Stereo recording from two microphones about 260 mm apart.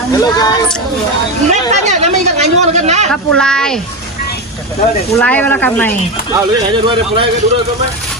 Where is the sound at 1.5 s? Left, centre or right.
Right.